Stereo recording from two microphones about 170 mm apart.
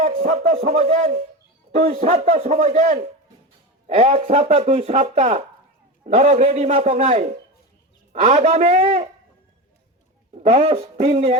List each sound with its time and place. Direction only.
0.0 s a man's voice: 40° right (ahead or behind)
10.3 s speech: 35° right (ahead or behind)